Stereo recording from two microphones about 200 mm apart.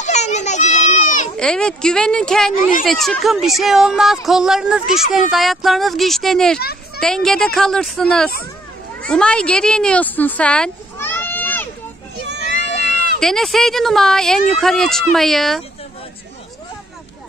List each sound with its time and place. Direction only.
0.0 s children playing: 35° left (ahead or behind)
1.3 s speech: 5° left (ahead or behind)
13.2 s speech: centre (ahead or behind)